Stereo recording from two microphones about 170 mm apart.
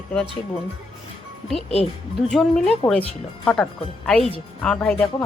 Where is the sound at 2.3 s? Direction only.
Centre (ahead or behind).